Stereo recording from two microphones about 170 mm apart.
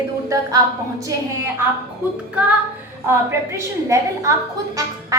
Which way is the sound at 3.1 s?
15° right (ahead or behind).